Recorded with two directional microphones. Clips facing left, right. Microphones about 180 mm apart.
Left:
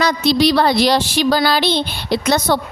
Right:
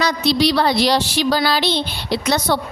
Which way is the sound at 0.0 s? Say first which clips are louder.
Left 2 dB; 50° left (ahead or behind).